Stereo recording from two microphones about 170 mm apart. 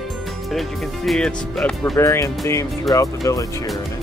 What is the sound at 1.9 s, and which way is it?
Speech, 15° left (ahead or behind).